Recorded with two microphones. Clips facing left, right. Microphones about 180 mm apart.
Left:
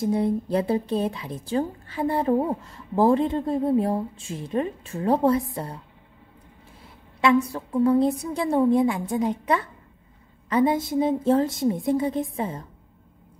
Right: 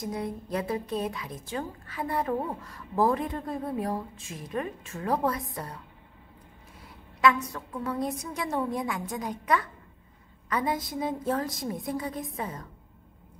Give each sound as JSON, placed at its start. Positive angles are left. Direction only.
{"t": 0.0, "sound": "a woman's voice", "side_deg": 30}
{"t": 7.2, "sound": "a woman's voice", "side_deg": 30}